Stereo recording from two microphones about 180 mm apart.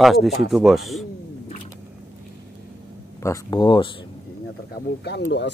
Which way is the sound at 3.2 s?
25° left (ahead or behind).